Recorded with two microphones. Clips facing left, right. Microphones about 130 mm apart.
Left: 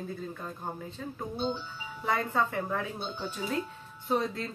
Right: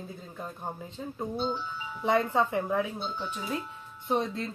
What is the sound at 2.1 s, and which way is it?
Speech, 20° right (ahead or behind).